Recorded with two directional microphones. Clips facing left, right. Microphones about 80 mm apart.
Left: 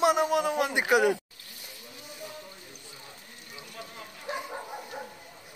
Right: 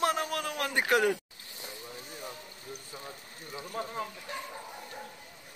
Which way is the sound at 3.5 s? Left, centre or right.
Right.